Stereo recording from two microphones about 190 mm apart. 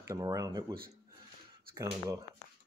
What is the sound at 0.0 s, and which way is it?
Speech, 15° right (ahead or behind).